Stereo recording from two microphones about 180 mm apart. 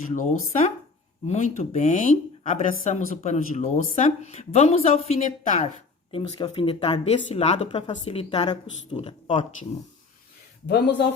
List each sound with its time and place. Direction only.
0.2 s a woman's voice: 45° left (ahead or behind)
10.7 s speech: 70° left (ahead or behind)